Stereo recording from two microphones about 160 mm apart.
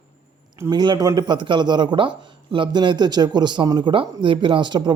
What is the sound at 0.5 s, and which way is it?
A man's voice, 20° right (ahead or behind).